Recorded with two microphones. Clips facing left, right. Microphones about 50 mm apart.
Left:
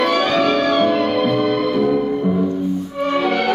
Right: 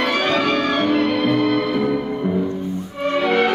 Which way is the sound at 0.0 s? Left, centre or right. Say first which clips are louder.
Left 3 dB; centre.